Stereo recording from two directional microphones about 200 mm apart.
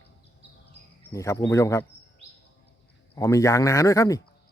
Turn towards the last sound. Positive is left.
turn(degrees=15)  # may be behind; listen again after turning